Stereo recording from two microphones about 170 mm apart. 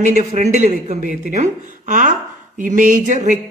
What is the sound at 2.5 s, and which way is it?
Speech, 50° right (ahead or behind).